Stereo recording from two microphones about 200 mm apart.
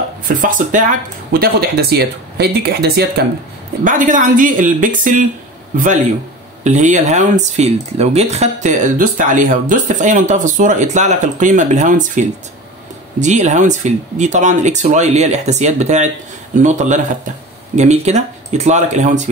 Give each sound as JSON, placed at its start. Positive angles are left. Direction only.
{"t": 0.3, "sound": "speech", "side_deg": -40}
{"t": 3.8, "sound": "speech", "side_deg": -40}
{"t": 6.6, "sound": "speech", "side_deg": -35}